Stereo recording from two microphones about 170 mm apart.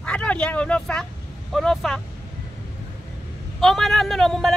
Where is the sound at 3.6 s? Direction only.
Centre (ahead or behind).